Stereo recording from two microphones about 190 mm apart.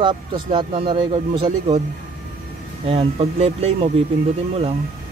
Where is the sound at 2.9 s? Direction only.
30° right (ahead or behind).